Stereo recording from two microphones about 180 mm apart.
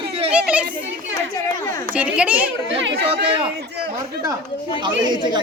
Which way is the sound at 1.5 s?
15° left (ahead or behind).